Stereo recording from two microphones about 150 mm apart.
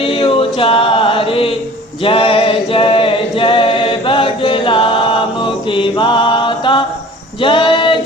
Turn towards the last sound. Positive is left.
turn(degrees=35)  # may be behind; listen again after turning